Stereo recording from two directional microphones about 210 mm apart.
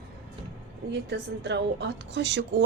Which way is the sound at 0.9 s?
55° right (ahead or behind).